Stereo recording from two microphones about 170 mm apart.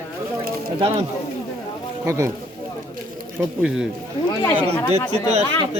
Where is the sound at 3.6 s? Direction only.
5° right (ahead or behind).